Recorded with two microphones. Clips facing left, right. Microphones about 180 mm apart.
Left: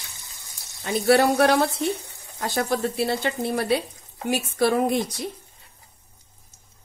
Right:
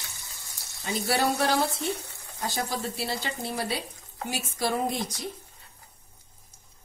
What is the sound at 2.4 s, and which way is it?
A woman's voice, 65° left (ahead or behind).